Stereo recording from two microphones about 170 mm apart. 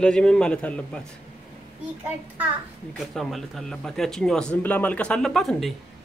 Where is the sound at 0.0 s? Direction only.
5° left (ahead or behind).